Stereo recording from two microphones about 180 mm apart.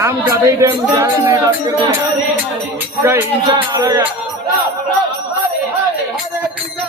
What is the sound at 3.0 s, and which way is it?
Speech, 15° right (ahead or behind).